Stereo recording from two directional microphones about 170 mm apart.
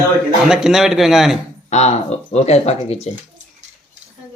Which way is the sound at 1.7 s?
40° left (ahead or behind).